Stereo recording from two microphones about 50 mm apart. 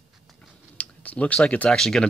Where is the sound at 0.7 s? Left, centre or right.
Left.